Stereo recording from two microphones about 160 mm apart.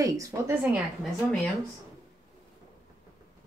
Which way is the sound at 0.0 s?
20° right (ahead or behind).